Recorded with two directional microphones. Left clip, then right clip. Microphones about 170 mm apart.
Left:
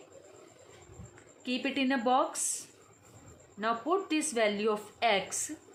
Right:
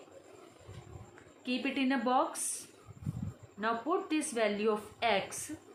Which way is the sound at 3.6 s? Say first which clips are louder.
Left 2 dB; 40° left (ahead or behind).